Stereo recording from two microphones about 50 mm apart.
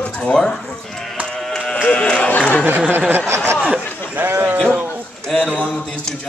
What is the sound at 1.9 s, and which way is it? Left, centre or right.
Speech, centre.